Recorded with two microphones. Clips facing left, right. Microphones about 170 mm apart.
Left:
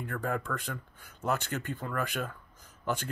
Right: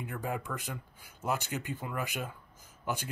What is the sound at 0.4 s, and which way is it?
Speech, 15° right (ahead or behind).